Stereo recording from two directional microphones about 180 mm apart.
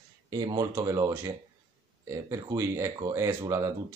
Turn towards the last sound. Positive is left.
turn(degrees=-20)  # may be behind; listen again after turning